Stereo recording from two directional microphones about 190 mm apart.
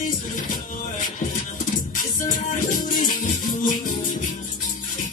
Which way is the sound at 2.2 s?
45° left (ahead or behind).